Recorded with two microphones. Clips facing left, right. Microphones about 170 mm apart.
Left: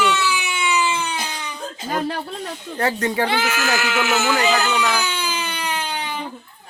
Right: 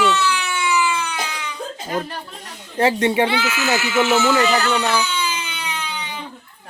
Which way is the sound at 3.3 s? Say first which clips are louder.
Right 1 dB; 50° left (ahead or behind).